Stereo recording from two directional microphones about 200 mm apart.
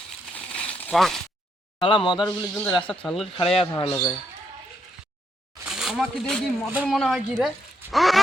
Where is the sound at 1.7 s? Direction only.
25° left (ahead or behind).